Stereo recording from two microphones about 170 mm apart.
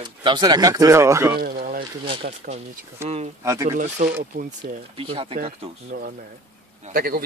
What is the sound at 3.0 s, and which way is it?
Speech, 15° right (ahead or behind).